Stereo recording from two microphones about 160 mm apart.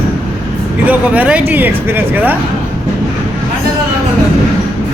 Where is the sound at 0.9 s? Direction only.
10° right (ahead or behind).